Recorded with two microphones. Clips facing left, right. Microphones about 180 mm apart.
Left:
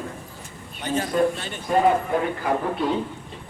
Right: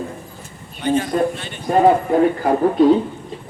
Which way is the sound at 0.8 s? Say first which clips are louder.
Right 4 dB; 40° left (ahead or behind).